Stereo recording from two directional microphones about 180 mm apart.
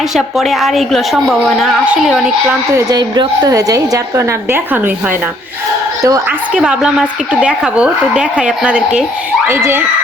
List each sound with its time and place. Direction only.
0.1 s a woman's voice: centre (ahead or behind)
2.7 s a woman's voice: 20° right (ahead or behind)
6.5 s a woman's voice: 5° right (ahead or behind)